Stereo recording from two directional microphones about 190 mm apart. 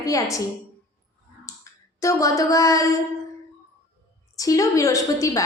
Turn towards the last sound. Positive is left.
turn(degrees=15)  # may be behind; listen again after turning